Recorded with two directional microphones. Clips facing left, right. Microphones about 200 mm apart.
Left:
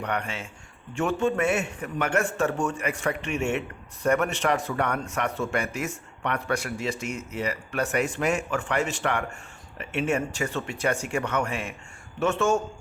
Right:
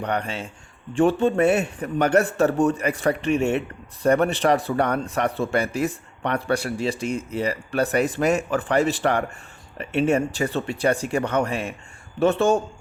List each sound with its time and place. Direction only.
0.0 s a man's voice: 35° right (ahead or behind)